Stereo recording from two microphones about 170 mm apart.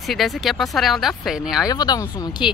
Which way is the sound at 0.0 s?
Centre (ahead or behind).